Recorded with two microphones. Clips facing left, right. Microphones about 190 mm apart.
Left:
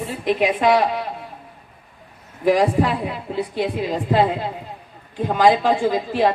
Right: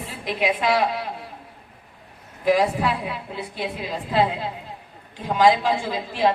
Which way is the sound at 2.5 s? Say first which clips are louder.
Left 3 dB; 45° left (ahead or behind).